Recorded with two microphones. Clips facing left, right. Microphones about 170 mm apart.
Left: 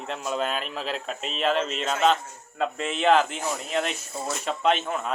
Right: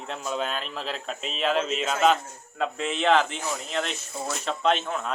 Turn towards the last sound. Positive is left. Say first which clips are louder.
# left 1 dB
turn(degrees=5)  # may be behind; listen again after turning